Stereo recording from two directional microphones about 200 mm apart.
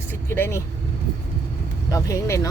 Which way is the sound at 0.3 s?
10° left (ahead or behind).